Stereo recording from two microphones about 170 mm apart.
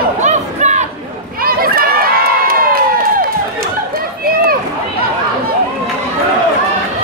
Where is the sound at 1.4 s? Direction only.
60° right (ahead or behind).